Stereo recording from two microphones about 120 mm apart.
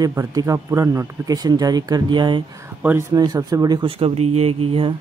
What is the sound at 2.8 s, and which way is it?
Speech, 15° right (ahead or behind).